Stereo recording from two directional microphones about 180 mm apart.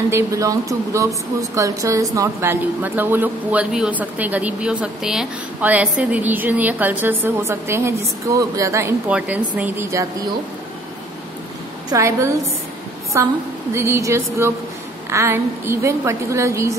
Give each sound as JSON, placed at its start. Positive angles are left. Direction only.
{"t": 0.1, "sound": "speech", "side_deg": -20}
{"t": 11.9, "sound": "speech", "side_deg": -15}